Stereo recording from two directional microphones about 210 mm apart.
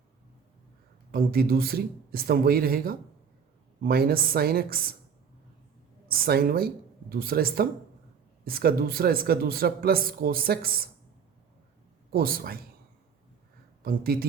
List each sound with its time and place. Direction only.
1.1 s a man's voice: 45° right (ahead or behind)
6.1 s a man's voice: 45° right (ahead or behind)
12.1 s a man's voice: 45° right (ahead or behind)
13.8 s a man's voice: 45° right (ahead or behind)